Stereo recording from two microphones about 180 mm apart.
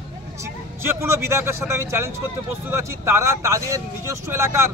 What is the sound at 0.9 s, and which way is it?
Speech, 15° right (ahead or behind).